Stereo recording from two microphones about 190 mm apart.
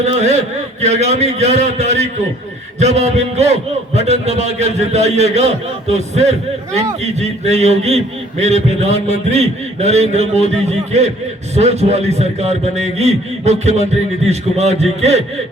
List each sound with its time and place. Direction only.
0.0 s a man's voice: 35° right (ahead or behind)